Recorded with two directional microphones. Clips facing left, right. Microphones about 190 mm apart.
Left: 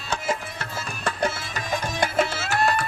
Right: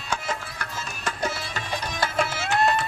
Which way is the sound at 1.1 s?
60° left (ahead or behind).